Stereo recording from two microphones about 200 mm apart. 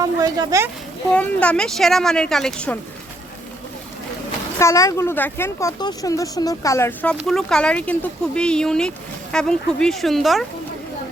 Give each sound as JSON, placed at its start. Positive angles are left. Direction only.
{"t": 0.0, "sound": "speech", "side_deg": -15}
{"t": 1.1, "sound": "speech", "side_deg": 5}
{"t": 4.6, "sound": "speech", "side_deg": 15}